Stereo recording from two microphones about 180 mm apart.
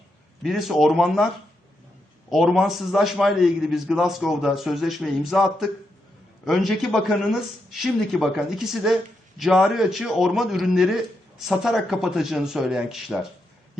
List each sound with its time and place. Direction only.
0.4 s a man's voice: centre (ahead or behind)
2.3 s a man's voice: centre (ahead or behind)